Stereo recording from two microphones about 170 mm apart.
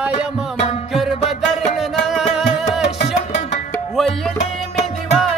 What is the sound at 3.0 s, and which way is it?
Music, 45° left (ahead or behind).